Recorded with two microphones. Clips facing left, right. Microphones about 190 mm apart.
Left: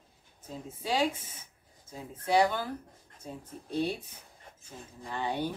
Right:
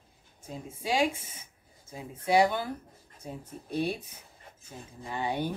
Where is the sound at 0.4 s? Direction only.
10° right (ahead or behind).